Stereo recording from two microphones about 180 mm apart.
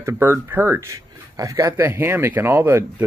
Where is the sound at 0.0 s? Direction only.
15° right (ahead or behind).